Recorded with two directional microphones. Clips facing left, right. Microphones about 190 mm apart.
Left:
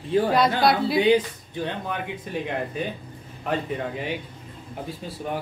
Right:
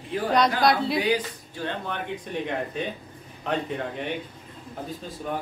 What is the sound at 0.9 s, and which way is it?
Speech, 25° left (ahead or behind).